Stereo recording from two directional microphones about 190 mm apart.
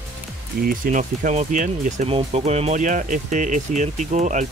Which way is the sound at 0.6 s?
45° right (ahead or behind).